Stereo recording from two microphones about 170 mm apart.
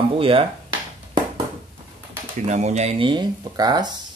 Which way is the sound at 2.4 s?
45° right (ahead or behind).